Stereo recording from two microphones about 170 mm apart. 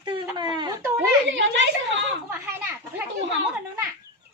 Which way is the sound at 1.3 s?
90° right.